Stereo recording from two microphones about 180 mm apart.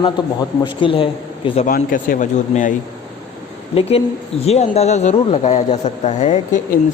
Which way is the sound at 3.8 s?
35° left (ahead or behind).